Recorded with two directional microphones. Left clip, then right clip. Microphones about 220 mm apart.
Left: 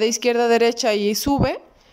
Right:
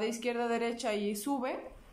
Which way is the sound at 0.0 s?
50° left (ahead or behind).